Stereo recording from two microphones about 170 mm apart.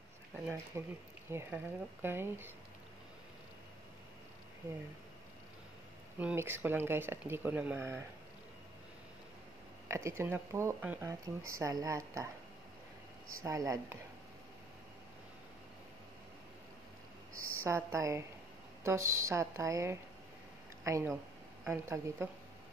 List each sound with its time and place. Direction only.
0.7 s speech: 15° right (ahead or behind)
6.1 s speech: 10° right (ahead or behind)
9.8 s speech: 15° right (ahead or behind)
13.3 s speech: 20° right (ahead or behind)
17.6 s speech: 15° right (ahead or behind)